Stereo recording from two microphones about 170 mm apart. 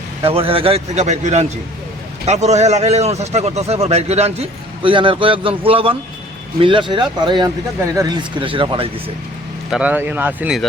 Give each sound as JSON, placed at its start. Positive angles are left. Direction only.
{"t": 0.2, "sound": "a man's voice", "side_deg": -35}
{"t": 9.6, "sound": "speech", "side_deg": -5}